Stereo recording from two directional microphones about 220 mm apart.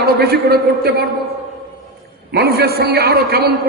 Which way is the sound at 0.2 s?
45° right (ahead or behind).